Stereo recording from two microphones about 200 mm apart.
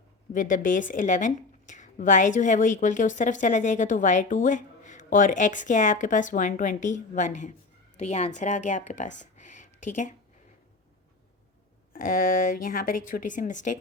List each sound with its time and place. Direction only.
0.3 s a woman's voice: 40° left (ahead or behind)
9.3 s a sound: 35° left (ahead or behind)
11.9 s speech: 45° left (ahead or behind)